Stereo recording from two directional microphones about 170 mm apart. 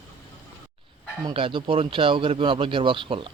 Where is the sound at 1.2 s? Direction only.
30° right (ahead or behind).